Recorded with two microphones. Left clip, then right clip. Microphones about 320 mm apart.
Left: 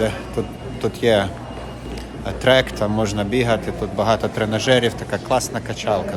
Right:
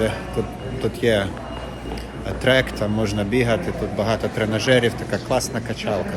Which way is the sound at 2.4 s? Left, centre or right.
Centre.